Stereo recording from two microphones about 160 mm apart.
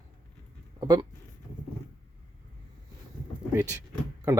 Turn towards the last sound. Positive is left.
turn(degrees=-20)  # may be behind; listen again after turning